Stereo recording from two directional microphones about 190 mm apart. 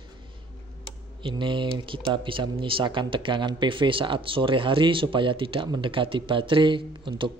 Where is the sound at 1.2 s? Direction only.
25° right (ahead or behind).